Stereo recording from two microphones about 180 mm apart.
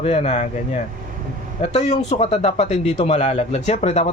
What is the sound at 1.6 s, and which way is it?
Speech, 40° left (ahead or behind).